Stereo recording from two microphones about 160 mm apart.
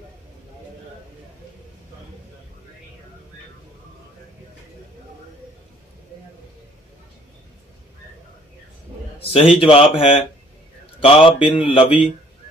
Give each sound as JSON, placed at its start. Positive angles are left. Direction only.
{"t": 9.2, "sound": "a man's voice", "side_deg": 40}